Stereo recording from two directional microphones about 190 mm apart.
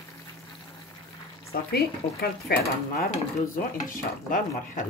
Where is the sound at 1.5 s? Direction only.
55° left (ahead or behind).